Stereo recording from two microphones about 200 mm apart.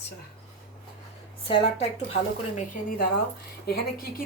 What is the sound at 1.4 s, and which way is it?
Speech, 25° left (ahead or behind).